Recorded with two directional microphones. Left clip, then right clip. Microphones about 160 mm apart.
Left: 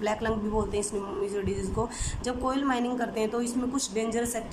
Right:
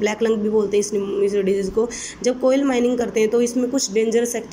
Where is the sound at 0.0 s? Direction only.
15° right (ahead or behind).